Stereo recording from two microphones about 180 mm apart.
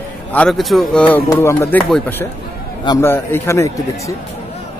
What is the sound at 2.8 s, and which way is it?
Speech, 20° left (ahead or behind).